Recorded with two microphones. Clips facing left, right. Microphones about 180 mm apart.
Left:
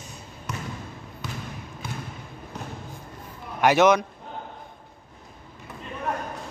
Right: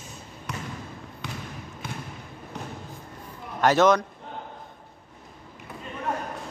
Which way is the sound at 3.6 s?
15° left (ahead or behind).